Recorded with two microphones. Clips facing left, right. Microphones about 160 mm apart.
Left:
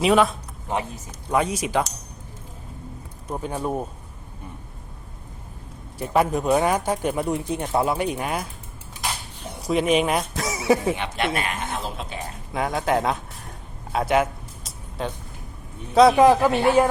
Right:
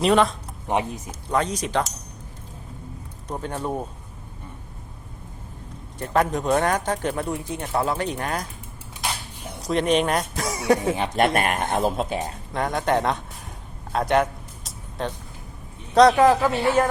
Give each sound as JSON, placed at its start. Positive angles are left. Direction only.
{"t": 0.0, "sound": "speech", "side_deg": 5}
{"t": 0.7, "sound": "speech", "side_deg": -15}
{"t": 1.3, "sound": "speech", "side_deg": 10}
{"t": 3.2, "sound": "speech", "side_deg": 5}
{"t": 6.0, "sound": "speech", "side_deg": 10}
{"t": 9.6, "sound": "speech", "side_deg": 5}
{"t": 10.9, "sound": "speech", "side_deg": -40}
{"t": 11.3, "sound": "speech", "side_deg": -55}
{"t": 12.5, "sound": "speech", "side_deg": 5}
{"t": 13.9, "sound": "music", "side_deg": 5}
{"t": 16.0, "sound": "speech", "side_deg": 10}